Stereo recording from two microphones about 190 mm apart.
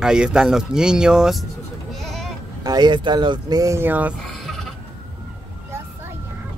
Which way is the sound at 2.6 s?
20° right (ahead or behind).